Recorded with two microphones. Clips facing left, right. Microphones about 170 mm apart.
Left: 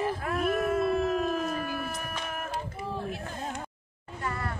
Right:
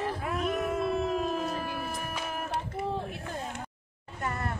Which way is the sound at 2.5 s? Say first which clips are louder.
Right 2 dB; 65° right (ahead or behind).